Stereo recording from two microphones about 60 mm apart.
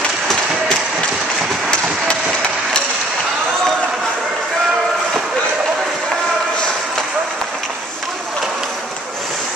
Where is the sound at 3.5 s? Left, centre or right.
Centre.